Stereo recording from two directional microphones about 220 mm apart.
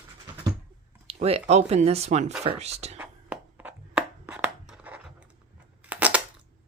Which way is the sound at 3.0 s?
5° right (ahead or behind).